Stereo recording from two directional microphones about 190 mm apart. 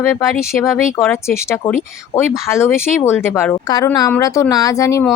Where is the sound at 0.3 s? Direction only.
15° left (ahead or behind).